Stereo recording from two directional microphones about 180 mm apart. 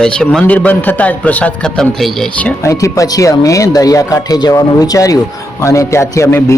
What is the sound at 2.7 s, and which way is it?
A man's voice, 20° left (ahead or behind).